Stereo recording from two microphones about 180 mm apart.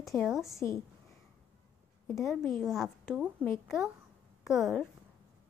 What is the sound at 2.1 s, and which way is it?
A woman's voice, centre (ahead or behind).